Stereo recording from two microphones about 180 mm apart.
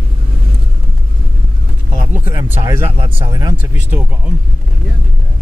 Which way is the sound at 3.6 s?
10° right (ahead or behind).